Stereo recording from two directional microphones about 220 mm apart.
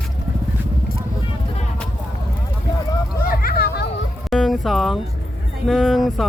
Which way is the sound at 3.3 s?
40° left (ahead or behind).